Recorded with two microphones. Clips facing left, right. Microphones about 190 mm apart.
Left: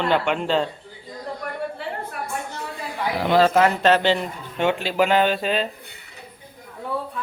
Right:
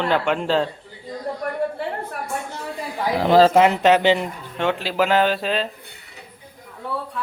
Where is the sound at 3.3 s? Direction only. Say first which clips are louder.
Right 4 dB; 35° right (ahead or behind).